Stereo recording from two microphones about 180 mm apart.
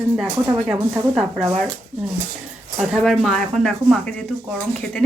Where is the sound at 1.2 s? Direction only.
10° right (ahead or behind).